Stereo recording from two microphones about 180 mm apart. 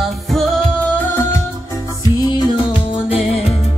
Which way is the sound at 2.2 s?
30° left (ahead or behind).